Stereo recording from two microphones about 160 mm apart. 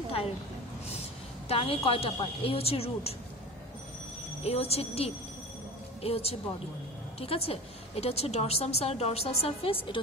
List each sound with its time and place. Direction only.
1.5 s a woman's voice: 35° left (ahead or behind)
4.4 s a woman's voice: 40° left (ahead or behind)